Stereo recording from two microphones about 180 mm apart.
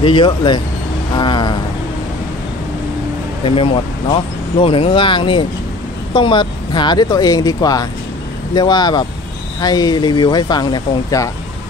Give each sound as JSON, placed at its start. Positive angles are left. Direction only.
{"t": 0.0, "sound": "speech", "side_deg": 25}
{"t": 3.4, "sound": "speech", "side_deg": 30}